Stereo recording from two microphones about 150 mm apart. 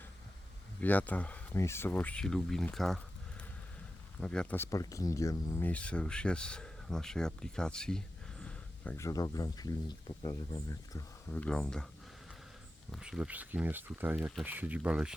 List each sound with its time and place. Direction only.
0.8 s speech: 10° left (ahead or behind)
4.2 s speech: 5° left (ahead or behind)
9.0 s speech: 20° left (ahead or behind)
11.3 s speech: 5° left (ahead or behind)
12.9 s speech: 5° right (ahead or behind)